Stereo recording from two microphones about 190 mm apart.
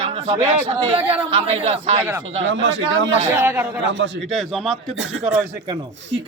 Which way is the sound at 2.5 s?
75° right (ahead or behind).